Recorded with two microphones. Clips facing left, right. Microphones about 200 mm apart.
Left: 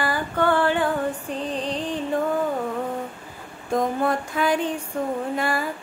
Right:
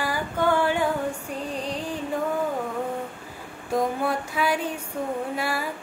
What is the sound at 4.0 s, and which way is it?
Music, 10° right (ahead or behind).